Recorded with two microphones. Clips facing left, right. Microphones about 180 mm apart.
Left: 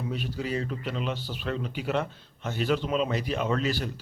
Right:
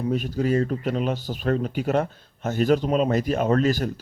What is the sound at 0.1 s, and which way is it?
Speech, 45° right (ahead or behind).